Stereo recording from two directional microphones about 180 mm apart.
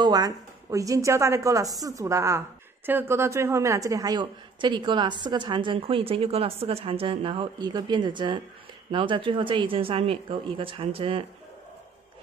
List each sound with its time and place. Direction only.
0.0 s a woman's voice: 20° right (ahead or behind)